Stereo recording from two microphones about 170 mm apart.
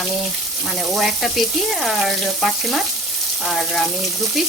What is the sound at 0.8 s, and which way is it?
Frying, centre (ahead or behind).